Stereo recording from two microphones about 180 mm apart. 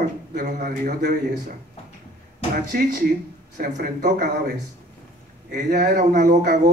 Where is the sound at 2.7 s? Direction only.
45° right (ahead or behind).